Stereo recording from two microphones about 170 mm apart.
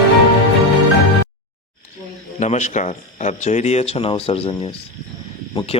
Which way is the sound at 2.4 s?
45° left (ahead or behind).